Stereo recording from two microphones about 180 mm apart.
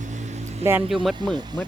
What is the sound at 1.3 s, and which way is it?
Speech, 25° right (ahead or behind).